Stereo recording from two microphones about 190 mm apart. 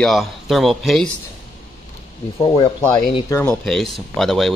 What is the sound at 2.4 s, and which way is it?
Speech, 25° left (ahead or behind).